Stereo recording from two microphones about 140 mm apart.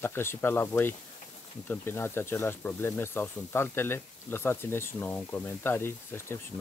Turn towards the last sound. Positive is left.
turn(degrees=15)  # may be behind; listen again after turning